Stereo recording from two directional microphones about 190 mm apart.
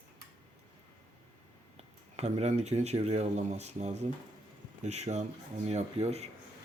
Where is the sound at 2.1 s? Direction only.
35° right (ahead or behind).